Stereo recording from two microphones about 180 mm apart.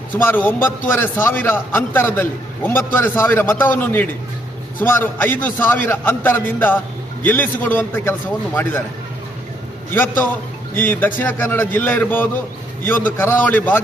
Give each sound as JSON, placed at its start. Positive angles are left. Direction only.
{"t": 0.2, "sound": "a man's voice", "side_deg": 10}
{"t": 9.9, "sound": "a man's voice", "side_deg": 10}